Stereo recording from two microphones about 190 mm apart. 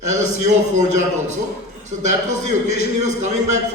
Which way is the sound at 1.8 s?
40° right (ahead or behind).